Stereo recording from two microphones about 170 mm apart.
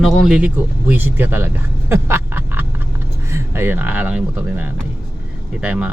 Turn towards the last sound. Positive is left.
turn(degrees=-5)  # may be behind; listen again after turning